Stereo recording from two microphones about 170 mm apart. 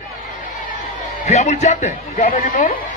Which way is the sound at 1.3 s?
45° left (ahead or behind).